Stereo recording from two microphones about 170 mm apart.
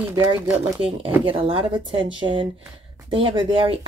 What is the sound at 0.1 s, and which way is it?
A woman's voice, 25° right (ahead or behind).